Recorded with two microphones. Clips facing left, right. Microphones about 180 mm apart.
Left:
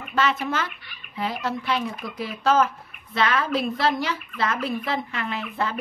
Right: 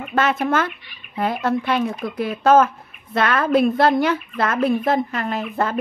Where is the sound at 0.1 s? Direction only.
50° right (ahead or behind).